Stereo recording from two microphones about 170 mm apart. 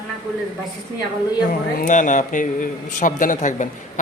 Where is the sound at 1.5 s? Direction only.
50° left (ahead or behind).